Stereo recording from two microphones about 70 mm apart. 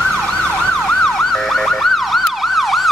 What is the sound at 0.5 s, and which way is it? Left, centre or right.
Emergency vehicle, centre.